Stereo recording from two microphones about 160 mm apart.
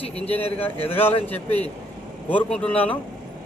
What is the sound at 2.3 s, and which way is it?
Speech, 5° left (ahead or behind).